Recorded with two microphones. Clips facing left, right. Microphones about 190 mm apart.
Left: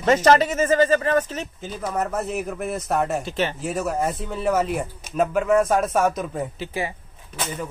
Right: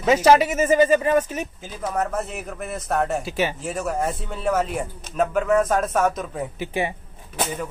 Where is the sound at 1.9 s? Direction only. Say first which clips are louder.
Left 1 dB; 5° left (ahead or behind).